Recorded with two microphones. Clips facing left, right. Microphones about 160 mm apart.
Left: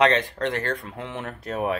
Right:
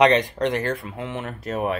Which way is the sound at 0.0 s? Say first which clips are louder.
Right 3 dB; 15° right (ahead or behind).